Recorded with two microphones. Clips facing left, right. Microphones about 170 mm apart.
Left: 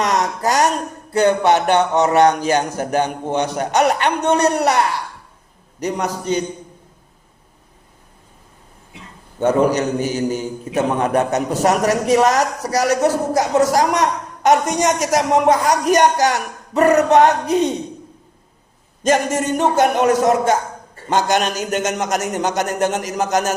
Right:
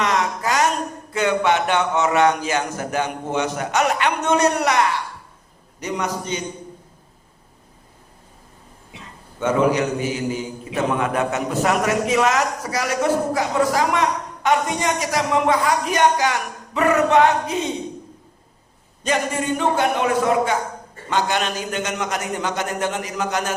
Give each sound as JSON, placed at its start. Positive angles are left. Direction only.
{"t": 0.0, "sound": "a sound", "side_deg": 40}
{"t": 1.1, "sound": "a woman's voice", "side_deg": 40}
{"t": 5.8, "sound": "a woman's voice", "side_deg": 35}
{"t": 9.4, "sound": "a woman's voice", "side_deg": 35}
{"t": 19.0, "sound": "a man's voice", "side_deg": 45}